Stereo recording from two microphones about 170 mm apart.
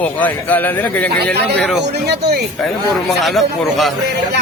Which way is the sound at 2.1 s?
75° right (ahead or behind).